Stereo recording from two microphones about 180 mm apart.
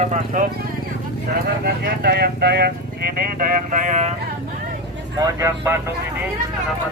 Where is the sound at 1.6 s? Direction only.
60° right (ahead or behind); by 4.1 s 40° right (ahead or behind).